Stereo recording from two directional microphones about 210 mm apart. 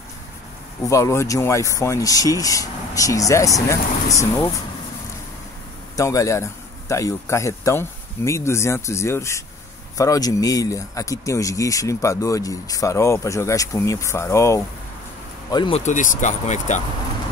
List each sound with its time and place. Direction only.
0.8 s speech: 15° left (ahead or behind)
5.9 s speech: 15° left (ahead or behind)
15.8 s speech: 35° left (ahead or behind)